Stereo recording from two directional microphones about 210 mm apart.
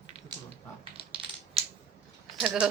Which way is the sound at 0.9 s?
25° right (ahead or behind).